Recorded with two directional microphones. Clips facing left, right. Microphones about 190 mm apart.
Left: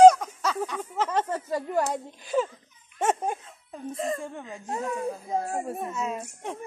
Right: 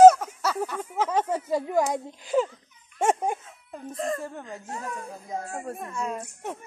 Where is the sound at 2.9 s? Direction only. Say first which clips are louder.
Right 2 dB; 10° right (ahead or behind).